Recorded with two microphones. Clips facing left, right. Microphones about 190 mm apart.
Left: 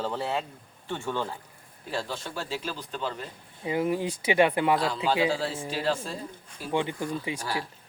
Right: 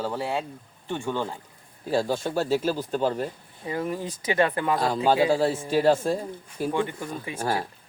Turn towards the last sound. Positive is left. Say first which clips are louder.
# right 6 dB
turn(degrees=-50)  # may be behind; listen again after turning